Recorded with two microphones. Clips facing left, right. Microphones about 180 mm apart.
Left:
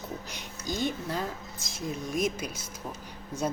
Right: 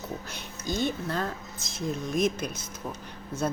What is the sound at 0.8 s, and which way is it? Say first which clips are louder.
Speech: right 1 dB; 10° left (ahead or behind).